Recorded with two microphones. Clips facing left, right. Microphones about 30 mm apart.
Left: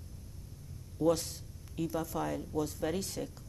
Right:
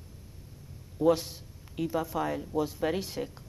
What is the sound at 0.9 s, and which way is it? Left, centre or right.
A woman's voice, right.